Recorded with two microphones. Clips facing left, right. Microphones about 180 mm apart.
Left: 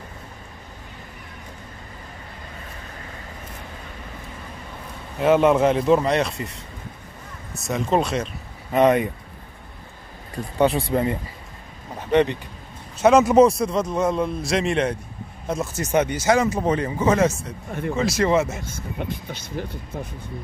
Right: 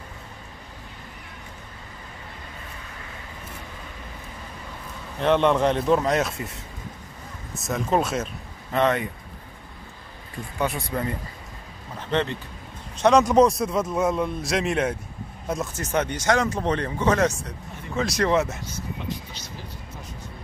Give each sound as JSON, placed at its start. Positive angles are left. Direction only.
{"t": 5.2, "sound": "speech", "side_deg": 5}
{"t": 8.7, "sound": "speech", "side_deg": 20}
{"t": 10.6, "sound": "speech", "side_deg": 30}
{"t": 18.6, "sound": "speech", "side_deg": 55}